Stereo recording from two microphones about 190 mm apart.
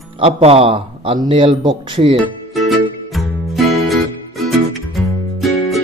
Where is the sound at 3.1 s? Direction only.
Centre (ahead or behind).